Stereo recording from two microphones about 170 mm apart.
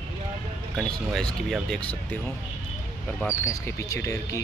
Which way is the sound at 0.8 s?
5° left (ahead or behind).